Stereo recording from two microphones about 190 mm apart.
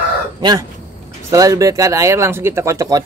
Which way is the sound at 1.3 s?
20° right (ahead or behind).